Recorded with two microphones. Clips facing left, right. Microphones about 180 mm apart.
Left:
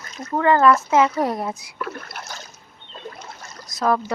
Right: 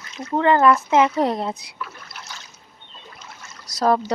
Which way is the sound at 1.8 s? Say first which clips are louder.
Left 5 dB; 55° left (ahead or behind).